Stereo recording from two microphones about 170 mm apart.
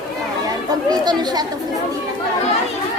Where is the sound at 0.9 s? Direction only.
25° right (ahead or behind).